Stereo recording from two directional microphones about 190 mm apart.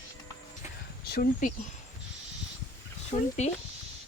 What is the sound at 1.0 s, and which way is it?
Speech, 55° left (ahead or behind).